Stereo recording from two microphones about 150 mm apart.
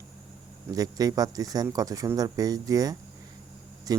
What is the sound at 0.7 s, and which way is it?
Speech, 25° right (ahead or behind).